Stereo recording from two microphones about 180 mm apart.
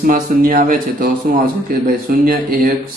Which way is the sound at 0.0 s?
50° right (ahead or behind).